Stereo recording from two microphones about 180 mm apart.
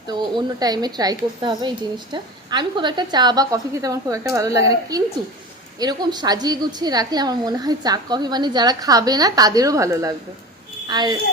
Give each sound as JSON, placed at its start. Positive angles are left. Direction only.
{"t": 0.1, "sound": "a woman's voice", "side_deg": -25}